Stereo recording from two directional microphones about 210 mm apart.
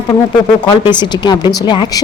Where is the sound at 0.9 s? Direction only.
20° left (ahead or behind).